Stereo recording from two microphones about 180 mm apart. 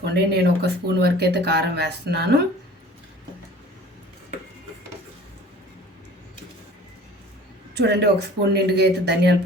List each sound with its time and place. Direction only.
0.0 s speech: 65° right (ahead or behind)
7.8 s speech: 70° right (ahead or behind)